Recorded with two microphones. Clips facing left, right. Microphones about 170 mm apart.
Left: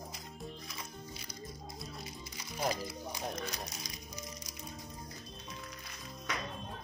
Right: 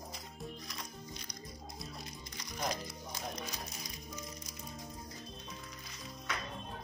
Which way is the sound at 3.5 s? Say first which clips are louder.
Left 1 dB; 75° left (ahead or behind).